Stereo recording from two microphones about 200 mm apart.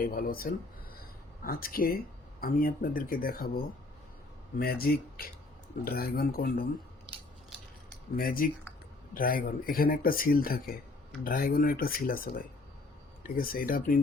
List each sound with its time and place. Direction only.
0.0 s speech: 45° left (ahead or behind)
4.6 s speech: 50° left (ahead or behind)
8.1 s speech: 45° left (ahead or behind)